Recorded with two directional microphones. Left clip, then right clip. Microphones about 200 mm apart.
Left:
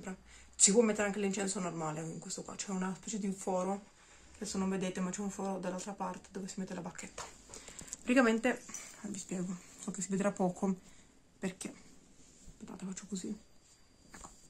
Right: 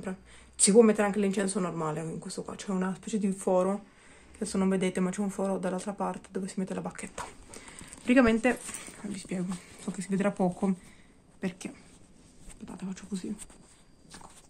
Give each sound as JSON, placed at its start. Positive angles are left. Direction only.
{"t": 0.6, "sound": "speech", "side_deg": -25}
{"t": 8.0, "sound": "speech", "side_deg": -5}